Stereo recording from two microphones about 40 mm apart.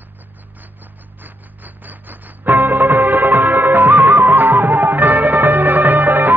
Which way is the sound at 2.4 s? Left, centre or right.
Right.